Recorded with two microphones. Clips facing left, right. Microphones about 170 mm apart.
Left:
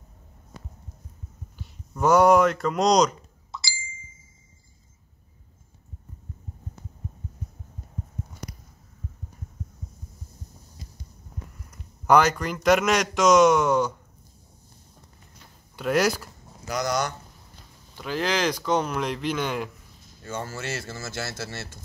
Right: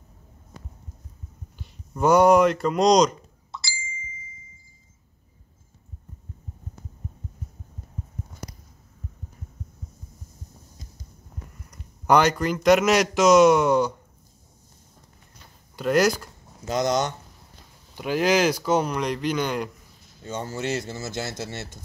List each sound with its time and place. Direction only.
2.0 s speech: centre (ahead or behind)
3.5 s ding: centre (ahead or behind)
12.1 s speech: centre (ahead or behind)
15.7 s speech: centre (ahead or behind)
16.6 s speech: 25° right (ahead or behind); by 19.7 s centre (ahead or behind)
20.2 s speech: 20° right (ahead or behind)